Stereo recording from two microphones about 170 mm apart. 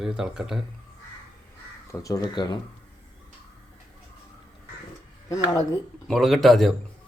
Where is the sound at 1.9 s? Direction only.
20° left (ahead or behind).